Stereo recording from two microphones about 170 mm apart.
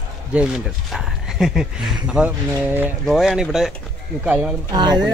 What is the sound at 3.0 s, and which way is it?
Speech, centre (ahead or behind).